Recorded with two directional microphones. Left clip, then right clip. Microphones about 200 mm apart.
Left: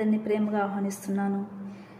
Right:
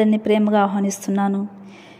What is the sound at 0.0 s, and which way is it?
A woman's voice, 40° right (ahead or behind).